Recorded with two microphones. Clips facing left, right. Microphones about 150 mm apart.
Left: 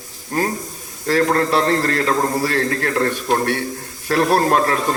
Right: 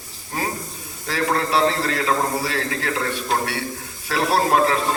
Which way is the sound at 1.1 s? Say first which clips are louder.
Left 5 dB; 50° left (ahead or behind).